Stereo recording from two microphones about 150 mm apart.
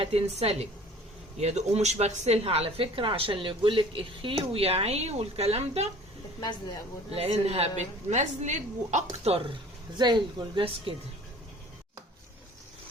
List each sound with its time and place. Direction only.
0.0 s a woman's voice: 40° right (ahead or behind)
7.1 s speech: 45° right (ahead or behind)
10.0 s a woman's voice: 30° right (ahead or behind)